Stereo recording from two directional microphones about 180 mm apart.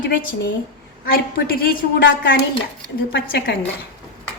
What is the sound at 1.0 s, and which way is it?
A woman's voice, 55° left (ahead or behind).